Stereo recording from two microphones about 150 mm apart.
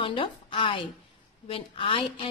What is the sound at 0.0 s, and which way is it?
A woman's voice, 35° left (ahead or behind).